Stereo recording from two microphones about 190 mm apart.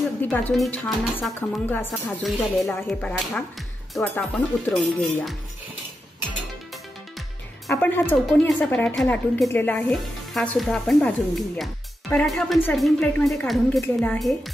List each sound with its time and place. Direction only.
0.2 s a woman's voice: 10° left (ahead or behind)
7.7 s a woman's voice: 10° left (ahead or behind)